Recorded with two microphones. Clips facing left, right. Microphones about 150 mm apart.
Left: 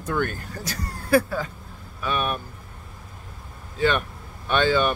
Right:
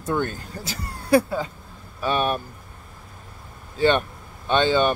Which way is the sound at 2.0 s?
30° right (ahead or behind).